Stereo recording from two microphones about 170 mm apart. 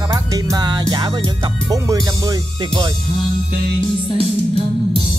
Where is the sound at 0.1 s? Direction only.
20° right (ahead or behind).